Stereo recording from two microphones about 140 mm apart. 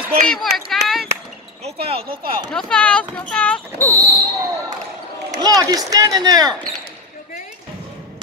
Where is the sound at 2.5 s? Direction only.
10° left (ahead or behind).